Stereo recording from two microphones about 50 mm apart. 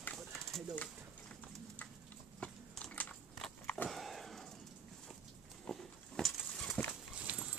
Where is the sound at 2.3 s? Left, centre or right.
Left.